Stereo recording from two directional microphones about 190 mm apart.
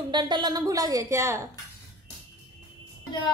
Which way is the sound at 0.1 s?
25° right (ahead or behind).